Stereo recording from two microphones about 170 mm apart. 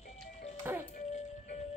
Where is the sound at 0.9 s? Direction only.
45° left (ahead or behind).